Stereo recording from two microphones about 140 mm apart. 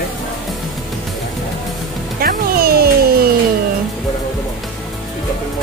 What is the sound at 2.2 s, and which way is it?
Music, 90° right.